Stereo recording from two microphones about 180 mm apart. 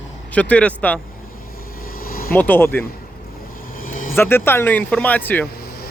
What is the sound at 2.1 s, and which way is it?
Vehicle, 55° left (ahead or behind).